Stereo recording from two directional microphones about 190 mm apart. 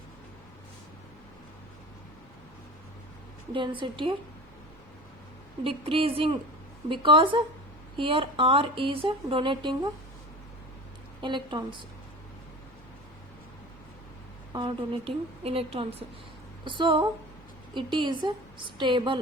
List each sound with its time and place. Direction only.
3.5 s speech: 25° right (ahead or behind)
5.6 s speech: 30° right (ahead or behind)
11.2 s speech: 25° right (ahead or behind)
14.5 s speech: 25° right (ahead or behind)